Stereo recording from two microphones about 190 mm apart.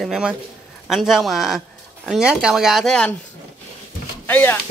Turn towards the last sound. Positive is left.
turn(degrees=10)  # may be behind; listen again after turning